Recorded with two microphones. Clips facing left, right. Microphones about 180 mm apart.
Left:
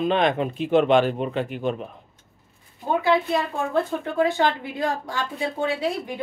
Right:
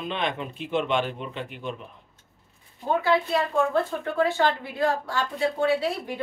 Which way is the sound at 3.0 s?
15° left (ahead or behind).